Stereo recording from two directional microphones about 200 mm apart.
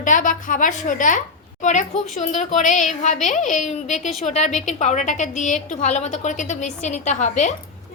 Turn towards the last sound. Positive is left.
turn(degrees=35)  # may be behind; listen again after turning